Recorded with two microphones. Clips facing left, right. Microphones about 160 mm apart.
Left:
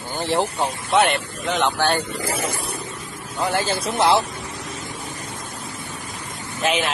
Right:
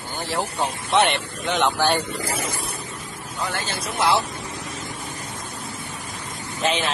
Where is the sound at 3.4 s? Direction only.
30° left (ahead or behind).